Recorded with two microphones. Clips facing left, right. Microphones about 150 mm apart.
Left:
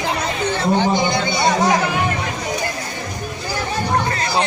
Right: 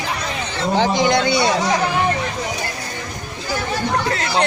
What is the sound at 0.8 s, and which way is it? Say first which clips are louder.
Speech: right 2 dB; 85° right.